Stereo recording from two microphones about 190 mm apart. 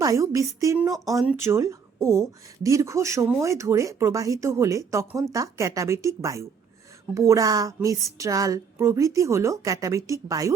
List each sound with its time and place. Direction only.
0.0 s speech: 15° right (ahead or behind)